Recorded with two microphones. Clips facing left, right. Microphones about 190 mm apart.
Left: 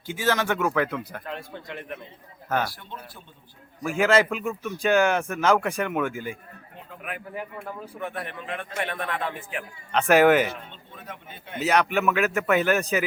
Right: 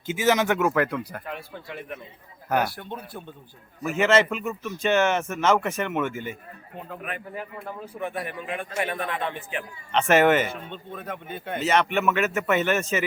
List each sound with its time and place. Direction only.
0.1 s a man's voice: 20° right (ahead or behind)
0.7 s a man's voice: centre (ahead or behind)
2.7 s speech: 55° right (ahead or behind)
3.8 s a man's voice: centre (ahead or behind)
7.9 s a man's voice: 5° right (ahead or behind)
10.5 s speech: 55° right (ahead or behind)
11.6 s a man's voice: centre (ahead or behind)